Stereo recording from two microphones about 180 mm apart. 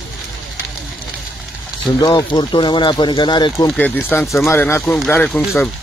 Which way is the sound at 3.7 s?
10° left (ahead or behind).